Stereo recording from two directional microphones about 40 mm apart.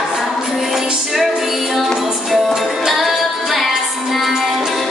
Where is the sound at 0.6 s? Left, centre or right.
Centre.